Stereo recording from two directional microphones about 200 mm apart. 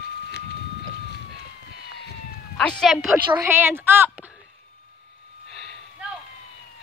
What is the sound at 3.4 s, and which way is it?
Speech, 10° right (ahead or behind).